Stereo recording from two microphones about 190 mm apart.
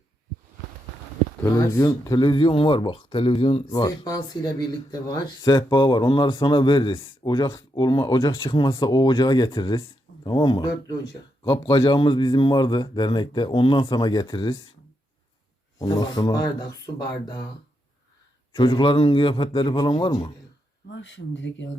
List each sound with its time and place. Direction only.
1.5 s speech: 15° left (ahead or behind)
15.8 s speech: 20° left (ahead or behind)
18.5 s speech: 25° left (ahead or behind)
20.9 s speech: 75° left (ahead or behind)